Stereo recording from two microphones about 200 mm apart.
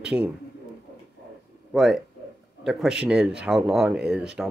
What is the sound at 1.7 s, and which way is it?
Speech, centre (ahead or behind).